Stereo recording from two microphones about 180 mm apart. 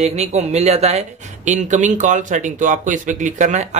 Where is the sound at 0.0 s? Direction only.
35° right (ahead or behind).